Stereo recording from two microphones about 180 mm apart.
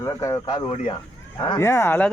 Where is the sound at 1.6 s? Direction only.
15° left (ahead or behind).